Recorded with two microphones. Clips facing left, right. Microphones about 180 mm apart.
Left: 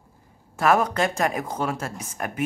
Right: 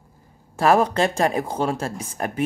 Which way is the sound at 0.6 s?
30° right (ahead or behind).